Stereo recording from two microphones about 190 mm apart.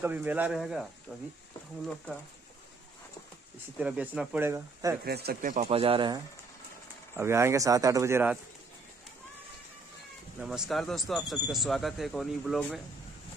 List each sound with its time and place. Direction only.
0.0 s speech: 10° right (ahead or behind)
3.8 s speech: 5° right (ahead or behind)
5.0 s speech: 55° right (ahead or behind)
5.7 s speech: 30° right (ahead or behind)
7.2 s speech: 15° right (ahead or behind)
10.4 s speech: 5° right (ahead or behind)